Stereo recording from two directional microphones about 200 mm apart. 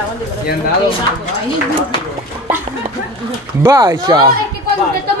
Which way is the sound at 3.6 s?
15° right (ahead or behind).